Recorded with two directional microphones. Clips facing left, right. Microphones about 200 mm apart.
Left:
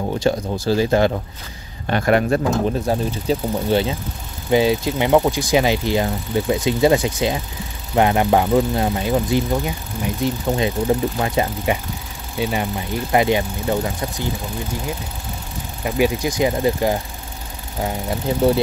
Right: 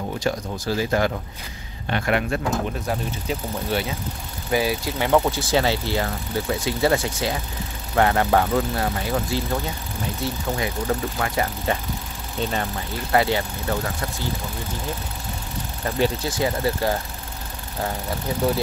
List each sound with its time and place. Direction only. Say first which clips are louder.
0.2 s speech: left 6 dB; 30° left (ahead or behind)
1.9 s a man's voice: left 6 dB; 40° left (ahead or behind)
2.9 s speech: left 6 dB; 30° left (ahead or behind)
15.8 s speech: left 4 dB; 10° left (ahead or behind)